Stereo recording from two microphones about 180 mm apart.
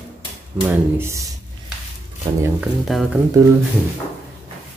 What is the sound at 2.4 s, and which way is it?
Speech, 5° right (ahead or behind).